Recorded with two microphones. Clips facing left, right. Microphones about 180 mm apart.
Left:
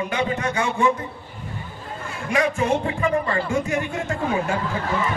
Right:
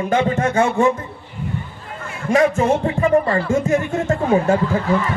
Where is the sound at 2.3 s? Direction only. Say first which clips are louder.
Right 6 dB; 45° right (ahead or behind).